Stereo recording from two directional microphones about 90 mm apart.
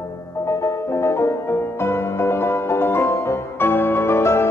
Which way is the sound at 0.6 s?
30° left (ahead or behind).